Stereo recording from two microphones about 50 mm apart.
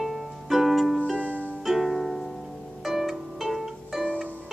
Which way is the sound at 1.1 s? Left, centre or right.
Left.